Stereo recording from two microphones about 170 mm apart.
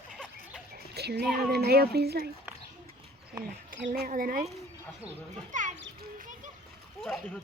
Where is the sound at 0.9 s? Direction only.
70° right (ahead or behind).